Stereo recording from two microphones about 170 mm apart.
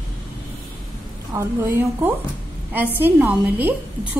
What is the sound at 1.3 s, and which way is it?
A woman's voice, 15° right (ahead or behind).